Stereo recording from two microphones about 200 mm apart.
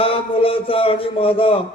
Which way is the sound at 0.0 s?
30° left (ahead or behind).